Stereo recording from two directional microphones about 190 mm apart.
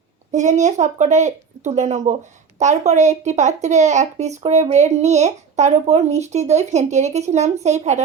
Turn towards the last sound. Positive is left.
turn(degrees=-35)  # may be behind; listen again after turning